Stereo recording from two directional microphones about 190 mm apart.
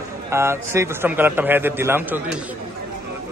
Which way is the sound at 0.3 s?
15° right (ahead or behind).